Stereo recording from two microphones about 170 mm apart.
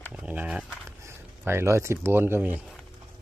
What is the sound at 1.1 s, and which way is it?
Speech, 15° right (ahead or behind).